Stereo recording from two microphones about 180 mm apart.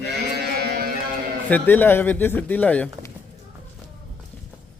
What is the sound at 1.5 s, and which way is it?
Speech, 10° left (ahead or behind).